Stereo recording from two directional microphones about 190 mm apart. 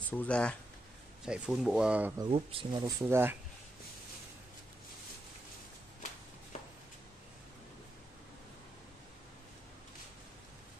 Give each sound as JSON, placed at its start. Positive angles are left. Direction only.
{"t": 0.1, "sound": "speech", "side_deg": 5}
{"t": 1.2, "sound": "speech", "side_deg": -5}
{"t": 2.1, "sound": "speech", "side_deg": -25}